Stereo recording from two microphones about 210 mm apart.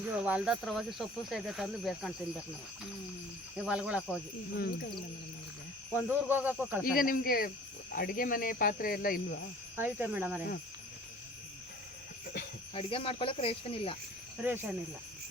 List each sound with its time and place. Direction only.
0.0 s speech: 5° right (ahead or behind)
3.6 s speech: 5° right (ahead or behind)
4.5 s cricket: 50° left (ahead or behind)
5.9 s snake: 10° right (ahead or behind)
6.8 s cricket: 45° left (ahead or behind)
9.7 s snake: 10° right (ahead or behind)
12.7 s speech: 25° left (ahead or behind)
14.4 s snake: 10° right (ahead or behind)